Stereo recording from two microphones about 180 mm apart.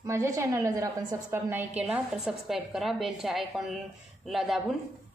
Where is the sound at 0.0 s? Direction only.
15° right (ahead or behind).